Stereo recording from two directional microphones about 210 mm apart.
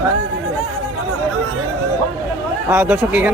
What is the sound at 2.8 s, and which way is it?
Speech, 5° right (ahead or behind).